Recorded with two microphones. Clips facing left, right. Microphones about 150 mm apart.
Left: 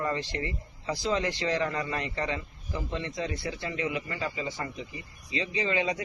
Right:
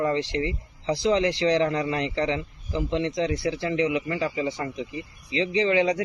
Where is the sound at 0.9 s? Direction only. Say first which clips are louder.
Right 7 dB; 85° right.